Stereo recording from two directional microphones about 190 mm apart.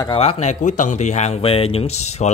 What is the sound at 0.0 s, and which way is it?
Speech, 30° left (ahead or behind).